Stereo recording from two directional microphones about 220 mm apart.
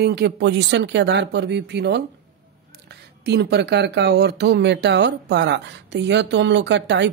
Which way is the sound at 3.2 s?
50° right (ahead or behind).